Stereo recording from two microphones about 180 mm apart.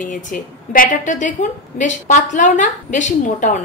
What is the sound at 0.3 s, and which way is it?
A woman's voice, 45° left (ahead or behind).